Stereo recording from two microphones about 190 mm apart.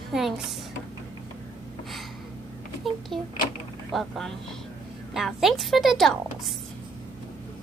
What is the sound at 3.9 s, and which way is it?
A woman's voice, centre (ahead or behind).